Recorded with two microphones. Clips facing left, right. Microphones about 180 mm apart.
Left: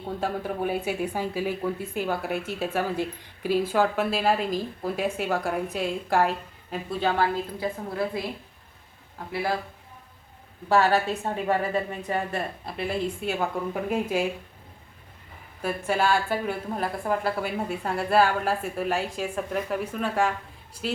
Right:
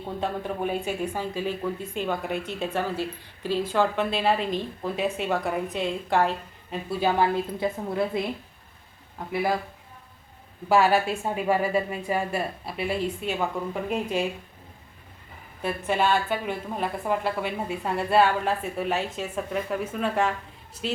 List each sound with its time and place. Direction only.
0.2 s a woman's voice: 5° left (ahead or behind)
7.0 s a woman's voice: 15° right (ahead or behind)
9.3 s a woman's voice: 15° right (ahead or behind)
10.7 s a woman's voice: 15° right (ahead or behind); by 14.3 s 5° left (ahead or behind)
15.6 s a woman's voice: 5° left (ahead or behind)